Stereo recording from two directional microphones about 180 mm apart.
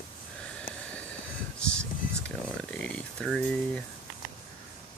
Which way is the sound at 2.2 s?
5° left (ahead or behind).